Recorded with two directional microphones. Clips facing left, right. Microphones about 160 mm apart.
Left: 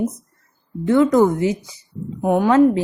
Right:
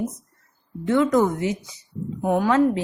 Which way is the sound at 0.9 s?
30° left (ahead or behind).